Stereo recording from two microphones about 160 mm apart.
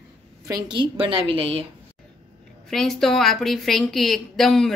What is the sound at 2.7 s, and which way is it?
A woman's voice, centre (ahead or behind).